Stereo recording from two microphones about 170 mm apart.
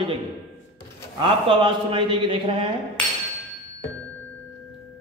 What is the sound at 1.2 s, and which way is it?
A man's voice, 30° right (ahead or behind).